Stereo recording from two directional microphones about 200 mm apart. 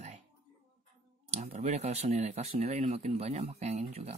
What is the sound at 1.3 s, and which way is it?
Speech, 35° right (ahead or behind).